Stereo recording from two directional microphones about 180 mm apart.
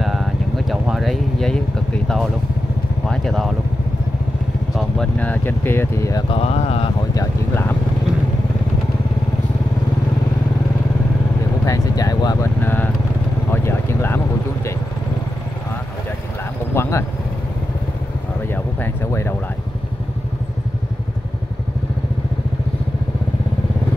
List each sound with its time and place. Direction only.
0.0 s vehicle: centre (ahead or behind)
2.0 s speech: centre (ahead or behind)
4.7 s speech: 5° left (ahead or behind)
6.3 s speech: 35° left (ahead or behind)
7.2 s speech: 15° left (ahead or behind)
11.6 s speech: 20° left (ahead or behind)
12.5 s speech: 10° left (ahead or behind)
13.5 s vehicle: 15° left (ahead or behind)
16.7 s speech: 15° left (ahead or behind)
18.5 s a sound: 15° left (ahead or behind)